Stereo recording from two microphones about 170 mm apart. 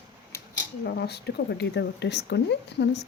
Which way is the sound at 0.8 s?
70° left (ahead or behind).